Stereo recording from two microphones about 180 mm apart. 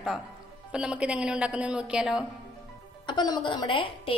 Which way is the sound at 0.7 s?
5° right (ahead or behind).